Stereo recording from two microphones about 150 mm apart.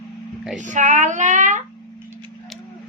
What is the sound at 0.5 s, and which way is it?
Speech, 55° right (ahead or behind).